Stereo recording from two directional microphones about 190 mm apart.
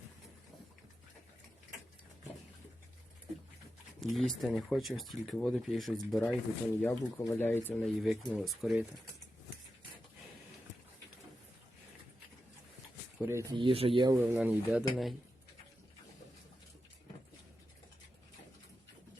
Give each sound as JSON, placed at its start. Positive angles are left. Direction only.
{"t": 4.0, "sound": "speech", "side_deg": 0}
{"t": 13.1, "sound": "speech", "side_deg": -15}
{"t": 14.2, "sound": "speech", "side_deg": -10}